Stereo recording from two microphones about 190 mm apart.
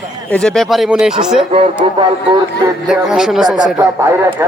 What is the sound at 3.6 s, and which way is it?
Speech, 15° right (ahead or behind).